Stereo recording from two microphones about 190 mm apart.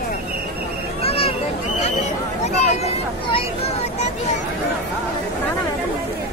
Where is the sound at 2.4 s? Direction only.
30° left (ahead or behind).